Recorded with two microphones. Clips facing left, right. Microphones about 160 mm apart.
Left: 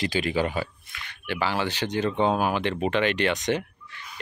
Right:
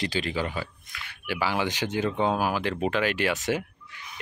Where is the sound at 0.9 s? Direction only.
10° right (ahead or behind).